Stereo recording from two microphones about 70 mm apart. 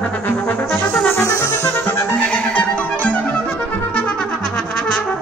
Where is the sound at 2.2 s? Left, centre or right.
Centre.